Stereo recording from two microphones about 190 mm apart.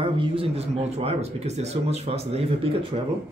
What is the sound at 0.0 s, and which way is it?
Speech, 30° right (ahead or behind).